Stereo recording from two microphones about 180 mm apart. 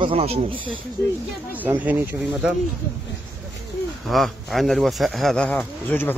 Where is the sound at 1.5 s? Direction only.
10° right (ahead or behind).